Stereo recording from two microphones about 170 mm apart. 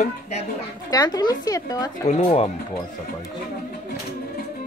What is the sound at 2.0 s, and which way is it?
Speech, 40° left (ahead or behind).